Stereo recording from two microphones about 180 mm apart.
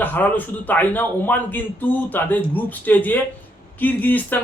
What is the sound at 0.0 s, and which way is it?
A man's voice, 10° left (ahead or behind).